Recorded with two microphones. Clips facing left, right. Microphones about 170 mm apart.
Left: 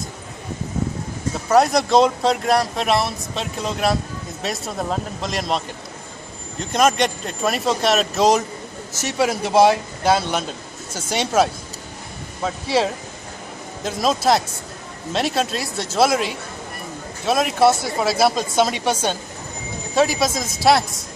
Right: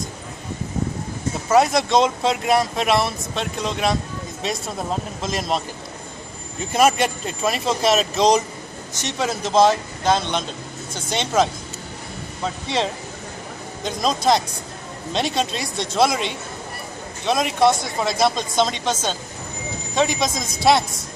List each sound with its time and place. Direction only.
1.5 s speech: centre (ahead or behind)
12.6 s speech: 5° left (ahead or behind)